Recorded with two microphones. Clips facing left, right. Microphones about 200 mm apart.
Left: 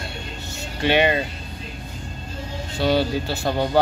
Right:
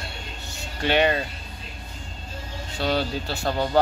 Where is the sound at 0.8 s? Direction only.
5° left (ahead or behind).